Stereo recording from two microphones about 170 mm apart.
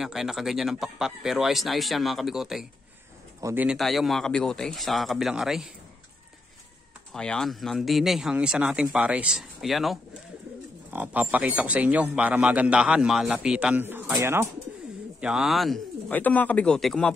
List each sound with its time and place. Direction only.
0.0 s speech: 5° right (ahead or behind)
3.3 s speech: 15° right (ahead or behind)
3.6 s speech: centre (ahead or behind)
7.1 s a man's voice: 5° left (ahead or behind); by 14.5 s 15° right (ahead or behind)
15.1 s a man's voice: 5° right (ahead or behind)